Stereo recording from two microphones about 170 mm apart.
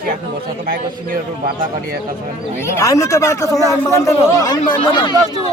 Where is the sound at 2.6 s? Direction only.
15° left (ahead or behind).